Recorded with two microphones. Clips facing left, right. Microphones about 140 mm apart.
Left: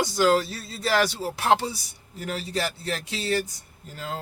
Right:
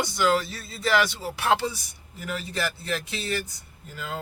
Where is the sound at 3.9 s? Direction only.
35° left (ahead or behind).